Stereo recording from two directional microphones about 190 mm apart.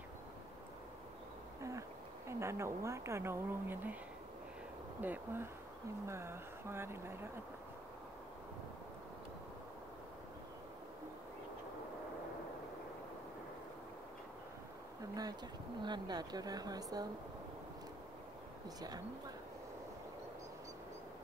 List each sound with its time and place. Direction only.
1.6 s speech: 15° right (ahead or behind)
5.0 s speech: 10° right (ahead or behind)
15.8 s speech: 20° right (ahead or behind)